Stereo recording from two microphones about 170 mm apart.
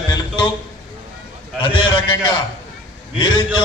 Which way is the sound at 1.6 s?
25° left (ahead or behind).